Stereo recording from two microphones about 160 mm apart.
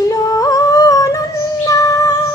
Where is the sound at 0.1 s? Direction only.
20° left (ahead or behind).